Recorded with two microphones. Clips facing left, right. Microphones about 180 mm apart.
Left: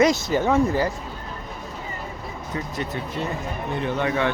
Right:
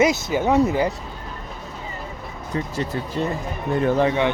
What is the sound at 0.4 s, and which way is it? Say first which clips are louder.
Speech: right 3 dB; 15° right (ahead or behind).